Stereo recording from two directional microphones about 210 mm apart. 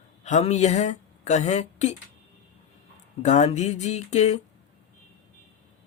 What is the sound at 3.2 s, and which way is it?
Speech, 35° left (ahead or behind).